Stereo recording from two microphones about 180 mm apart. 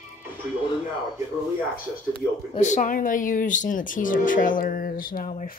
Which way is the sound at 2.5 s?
40° left (ahead or behind).